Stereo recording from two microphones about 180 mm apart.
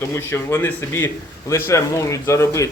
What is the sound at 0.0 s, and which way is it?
A man's voice, 15° left (ahead or behind).